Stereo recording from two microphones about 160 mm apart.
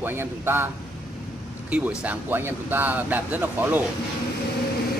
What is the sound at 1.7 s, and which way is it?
Speech, 5° right (ahead or behind).